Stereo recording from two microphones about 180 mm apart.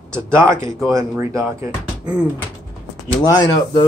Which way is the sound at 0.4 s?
15° right (ahead or behind).